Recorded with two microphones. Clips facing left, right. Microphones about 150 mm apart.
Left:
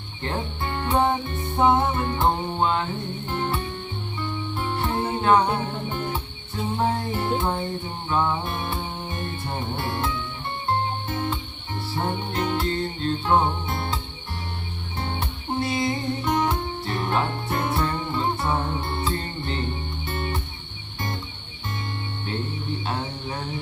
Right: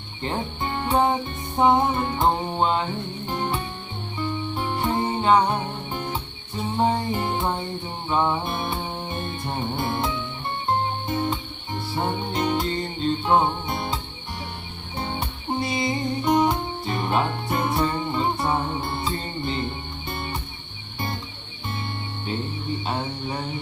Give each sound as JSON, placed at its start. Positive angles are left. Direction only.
{"t": 0.2, "sound": "speech", "side_deg": -15}
{"t": 1.5, "sound": "music", "side_deg": -15}
{"t": 6.7, "sound": "music", "side_deg": -15}
{"t": 11.1, "sound": "music", "side_deg": -10}
{"t": 15.2, "sound": "music", "side_deg": -15}